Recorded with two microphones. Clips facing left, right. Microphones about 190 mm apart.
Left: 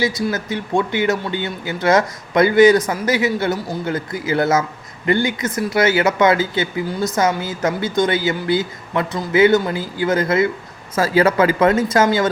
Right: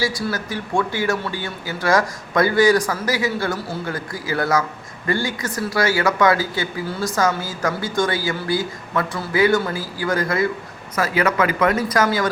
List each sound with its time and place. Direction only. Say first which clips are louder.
0.0 s speech: left 3 dB; 20° left (ahead or behind)